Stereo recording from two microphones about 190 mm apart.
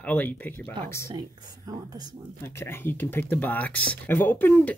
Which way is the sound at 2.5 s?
10° left (ahead or behind).